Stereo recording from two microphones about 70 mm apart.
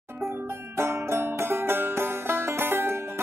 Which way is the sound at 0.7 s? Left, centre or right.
Right.